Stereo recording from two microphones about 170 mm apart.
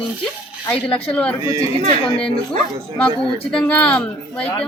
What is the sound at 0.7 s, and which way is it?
Speech, 10° left (ahead or behind).